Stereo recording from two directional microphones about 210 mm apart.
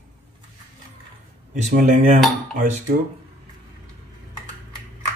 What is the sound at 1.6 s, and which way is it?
Speech, 35° right (ahead or behind).